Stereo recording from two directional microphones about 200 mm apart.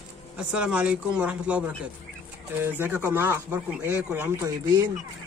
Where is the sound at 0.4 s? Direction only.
5° right (ahead or behind).